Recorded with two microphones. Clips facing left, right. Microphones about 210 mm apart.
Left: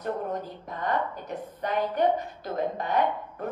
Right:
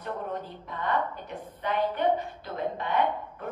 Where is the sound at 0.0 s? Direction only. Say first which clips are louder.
Left 3 dB; 45° left (ahead or behind).